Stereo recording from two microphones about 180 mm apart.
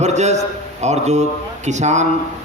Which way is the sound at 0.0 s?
40° right (ahead or behind).